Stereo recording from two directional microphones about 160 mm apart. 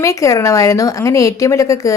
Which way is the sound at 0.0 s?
20° left (ahead or behind).